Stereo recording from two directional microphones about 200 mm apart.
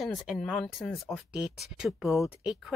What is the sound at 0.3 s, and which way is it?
Speech, centre (ahead or behind).